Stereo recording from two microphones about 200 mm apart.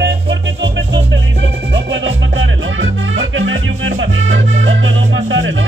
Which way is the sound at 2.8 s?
75° right (ahead or behind).